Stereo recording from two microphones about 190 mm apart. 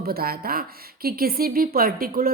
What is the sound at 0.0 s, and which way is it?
A woman's voice, 55° right (ahead or behind).